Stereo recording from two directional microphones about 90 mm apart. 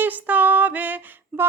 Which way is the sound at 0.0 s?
20° right (ahead or behind).